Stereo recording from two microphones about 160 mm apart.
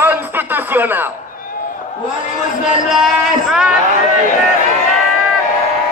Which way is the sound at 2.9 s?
5° right (ahead or behind).